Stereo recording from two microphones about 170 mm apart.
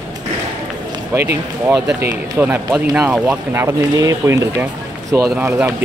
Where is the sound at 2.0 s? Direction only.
15° right (ahead or behind).